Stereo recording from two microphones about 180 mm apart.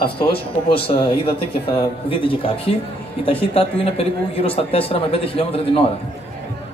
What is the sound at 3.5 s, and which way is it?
Speech, 35° left (ahead or behind).